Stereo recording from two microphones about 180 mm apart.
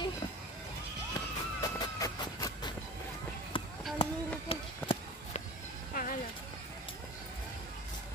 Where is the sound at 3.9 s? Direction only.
30° left (ahead or behind).